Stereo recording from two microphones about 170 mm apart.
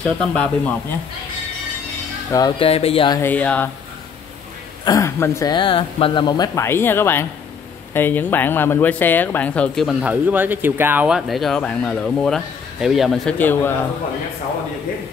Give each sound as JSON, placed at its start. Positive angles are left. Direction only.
{"t": 0.0, "sound": "speech", "side_deg": 5}
{"t": 2.6, "sound": "speech", "side_deg": 35}
{"t": 3.2, "sound": "speech", "side_deg": 10}
{"t": 4.8, "sound": "speech", "side_deg": 20}